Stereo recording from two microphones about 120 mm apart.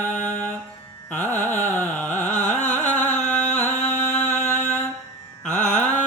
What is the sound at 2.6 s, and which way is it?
Music, 15° left (ahead or behind).